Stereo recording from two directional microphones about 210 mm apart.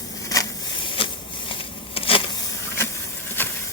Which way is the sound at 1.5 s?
25° left (ahead or behind).